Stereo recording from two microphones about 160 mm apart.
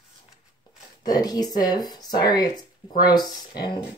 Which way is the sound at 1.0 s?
25° left (ahead or behind).